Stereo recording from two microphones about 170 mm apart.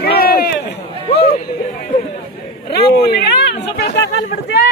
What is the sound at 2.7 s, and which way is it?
Speech, 70° left (ahead or behind).